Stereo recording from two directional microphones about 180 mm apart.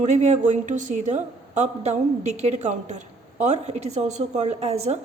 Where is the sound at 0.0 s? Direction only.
40° right (ahead or behind).